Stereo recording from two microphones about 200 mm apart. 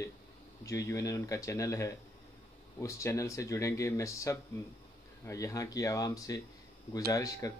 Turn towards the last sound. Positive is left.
turn(degrees=15)  # may be behind; listen again after turning